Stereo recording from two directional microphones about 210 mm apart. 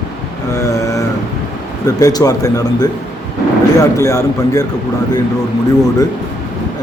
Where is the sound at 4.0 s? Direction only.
15° left (ahead or behind).